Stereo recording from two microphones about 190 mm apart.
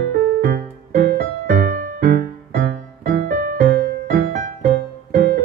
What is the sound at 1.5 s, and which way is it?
Music, 45° right (ahead or behind).